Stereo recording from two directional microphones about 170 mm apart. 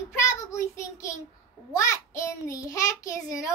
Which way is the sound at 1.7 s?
15° left (ahead or behind).